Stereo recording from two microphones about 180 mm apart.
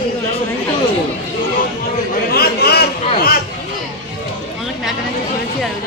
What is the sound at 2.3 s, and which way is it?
Chatter, 60° left (ahead or behind).